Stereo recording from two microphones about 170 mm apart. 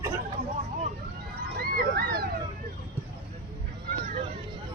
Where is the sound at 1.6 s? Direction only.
60° right (ahead or behind).